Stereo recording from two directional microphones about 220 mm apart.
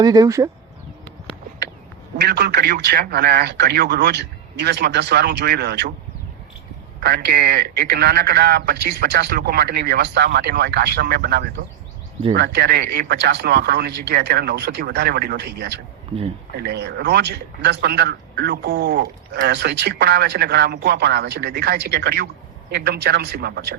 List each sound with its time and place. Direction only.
0.0 s speech: 15° right (ahead or behind)
2.1 s speech: 50° right (ahead or behind)
7.0 s speech: 45° right (ahead or behind)
16.1 s speech: 25° right (ahead or behind)
16.6 s speech: 50° right (ahead or behind)